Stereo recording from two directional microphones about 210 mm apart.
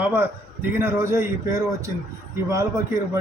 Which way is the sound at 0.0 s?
10° right (ahead or behind).